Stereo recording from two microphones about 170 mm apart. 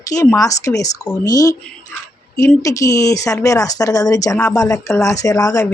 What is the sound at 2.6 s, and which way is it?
A woman's voice, 20° left (ahead or behind).